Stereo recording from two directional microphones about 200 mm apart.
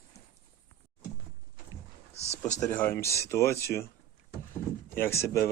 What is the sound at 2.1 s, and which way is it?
Speech, 30° left (ahead or behind).